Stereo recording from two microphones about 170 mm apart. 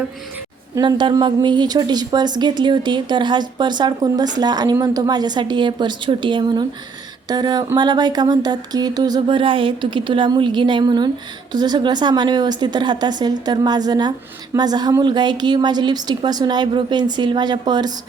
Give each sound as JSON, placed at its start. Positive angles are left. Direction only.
{"t": 0.8, "sound": "speech", "side_deg": -25}